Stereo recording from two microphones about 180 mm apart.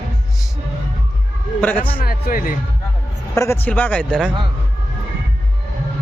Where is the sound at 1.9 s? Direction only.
55° left (ahead or behind).